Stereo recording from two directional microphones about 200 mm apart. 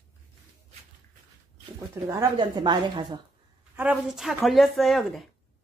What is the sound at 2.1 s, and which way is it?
A woman's voice, 20° right (ahead or behind).